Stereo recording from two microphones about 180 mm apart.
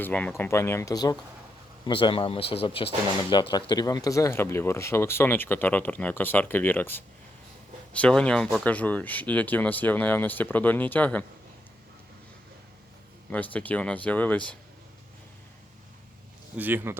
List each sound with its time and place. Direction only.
0.0 s speech: 5° left (ahead or behind)
13.3 s speech: 10° left (ahead or behind)
16.6 s speech: 10° right (ahead or behind)